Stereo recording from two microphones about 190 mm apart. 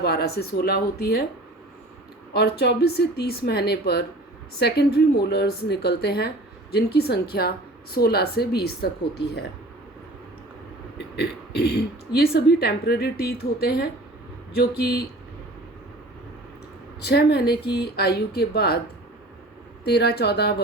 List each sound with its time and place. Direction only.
0.0 s a woman's voice: 55° left (ahead or behind)
2.3 s a woman's voice: 60° left (ahead or behind)
10.9 s a woman's voice: 60° left (ahead or behind)
17.0 s a woman's voice: 60° left (ahead or behind)
19.8 s a woman's voice: 60° left (ahead or behind)